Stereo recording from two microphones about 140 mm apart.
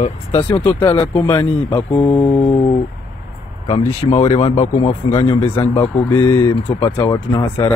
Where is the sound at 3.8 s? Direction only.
50° left (ahead or behind).